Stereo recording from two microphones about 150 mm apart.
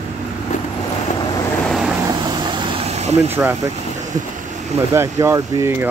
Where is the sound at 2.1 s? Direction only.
30° right (ahead or behind); by 3.3 s 45° right (ahead or behind).